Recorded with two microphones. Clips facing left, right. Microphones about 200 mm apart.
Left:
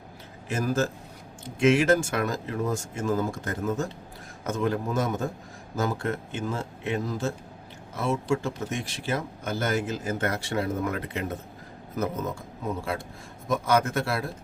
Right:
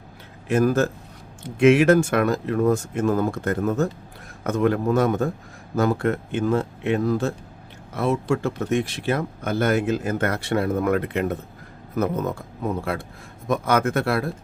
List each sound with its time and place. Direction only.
0.4 s speech: 60° right (ahead or behind)